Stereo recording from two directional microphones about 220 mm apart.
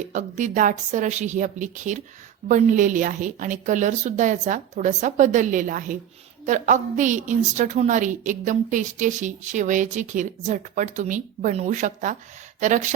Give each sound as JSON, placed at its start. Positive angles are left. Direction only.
{"t": 0.1, "sound": "a woman's voice", "side_deg": -35}